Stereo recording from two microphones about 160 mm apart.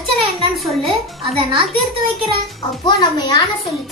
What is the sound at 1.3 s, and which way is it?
Speech, 40° right (ahead or behind).